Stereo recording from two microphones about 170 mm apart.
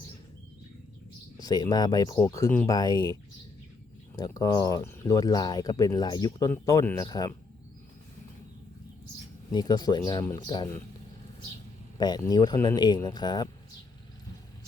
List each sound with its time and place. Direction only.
1.4 s speech: 25° left (ahead or behind)
9.5 s speech: 25° left (ahead or behind)
11.9 s speech: 25° left (ahead or behind)